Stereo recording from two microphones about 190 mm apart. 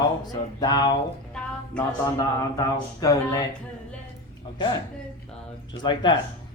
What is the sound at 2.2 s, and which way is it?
Speech, 20° left (ahead or behind).